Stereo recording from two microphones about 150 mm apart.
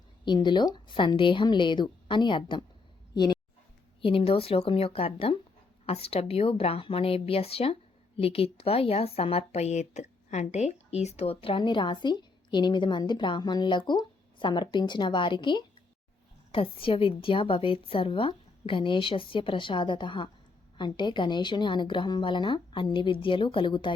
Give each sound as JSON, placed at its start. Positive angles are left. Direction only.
{"t": 0.3, "sound": "a woman's voice", "side_deg": 30}
{"t": 4.0, "sound": "a woman's voice", "side_deg": 40}